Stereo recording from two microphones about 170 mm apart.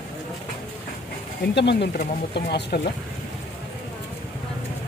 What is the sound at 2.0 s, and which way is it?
Speech, 75° left (ahead or behind).